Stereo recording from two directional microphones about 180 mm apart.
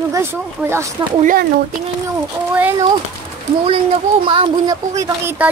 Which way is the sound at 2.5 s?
10° right (ahead or behind).